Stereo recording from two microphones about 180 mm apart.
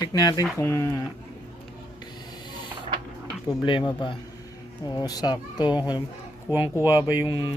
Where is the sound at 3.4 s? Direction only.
25° left (ahead or behind).